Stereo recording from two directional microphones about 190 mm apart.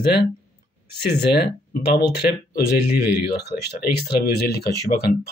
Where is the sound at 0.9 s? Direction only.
55° left (ahead or behind).